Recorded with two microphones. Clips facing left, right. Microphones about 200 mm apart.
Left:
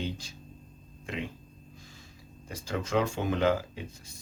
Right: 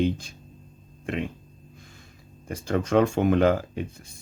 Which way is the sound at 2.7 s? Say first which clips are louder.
Right 7 dB; 55° right (ahead or behind).